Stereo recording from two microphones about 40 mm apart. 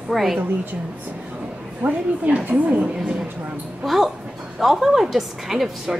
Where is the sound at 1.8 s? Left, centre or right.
Right.